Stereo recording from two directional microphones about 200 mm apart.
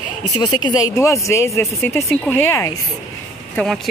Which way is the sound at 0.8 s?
15° left (ahead or behind).